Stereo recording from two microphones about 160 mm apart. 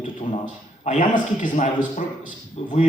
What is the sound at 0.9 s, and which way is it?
Speech, 55° left (ahead or behind).